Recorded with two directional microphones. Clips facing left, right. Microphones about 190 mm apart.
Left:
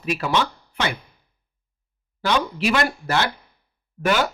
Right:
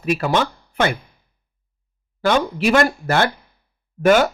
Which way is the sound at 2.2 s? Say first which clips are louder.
Right 4 dB; 50° right (ahead or behind).